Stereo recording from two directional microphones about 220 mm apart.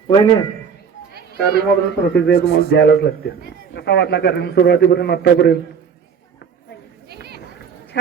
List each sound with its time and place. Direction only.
0.1 s a man's voice: 15° left (ahead or behind)
1.1 s children playing: 45° right (ahead or behind)
2.1 s a man's voice: 50° left (ahead or behind)
7.1 s a sound: 45° right (ahead or behind)